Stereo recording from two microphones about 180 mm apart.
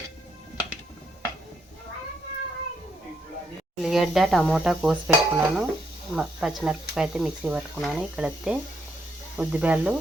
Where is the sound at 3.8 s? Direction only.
Centre (ahead or behind).